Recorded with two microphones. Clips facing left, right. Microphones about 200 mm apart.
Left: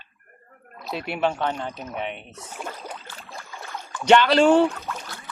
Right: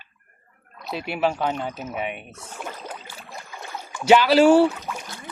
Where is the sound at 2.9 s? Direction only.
10° right (ahead or behind).